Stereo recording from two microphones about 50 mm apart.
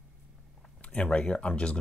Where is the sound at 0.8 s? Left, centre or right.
Left.